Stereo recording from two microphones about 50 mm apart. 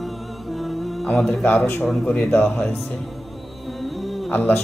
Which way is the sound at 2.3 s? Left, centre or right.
Left.